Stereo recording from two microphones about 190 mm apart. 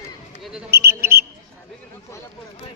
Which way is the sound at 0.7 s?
55° right (ahead or behind).